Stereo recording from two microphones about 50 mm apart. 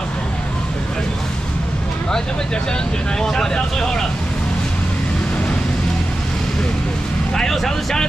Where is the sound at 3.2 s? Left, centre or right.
Centre.